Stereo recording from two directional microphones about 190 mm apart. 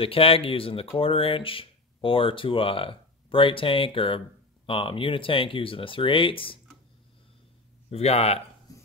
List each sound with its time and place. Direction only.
0.0 s speech: 30° left (ahead or behind)
7.9 s speech: 35° left (ahead or behind)